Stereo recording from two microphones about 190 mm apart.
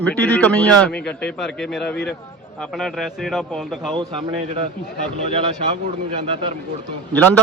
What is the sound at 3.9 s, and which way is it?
Speech, 30° right (ahead or behind).